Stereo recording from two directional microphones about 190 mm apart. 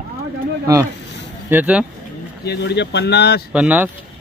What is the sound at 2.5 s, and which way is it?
Speech, 65° left (ahead or behind).